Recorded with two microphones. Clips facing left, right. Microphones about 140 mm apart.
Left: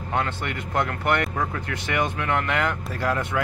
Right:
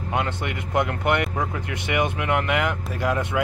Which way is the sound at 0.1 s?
20° right (ahead or behind).